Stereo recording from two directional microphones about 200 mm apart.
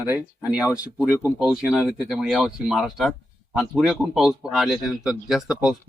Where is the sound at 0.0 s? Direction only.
5° right (ahead or behind).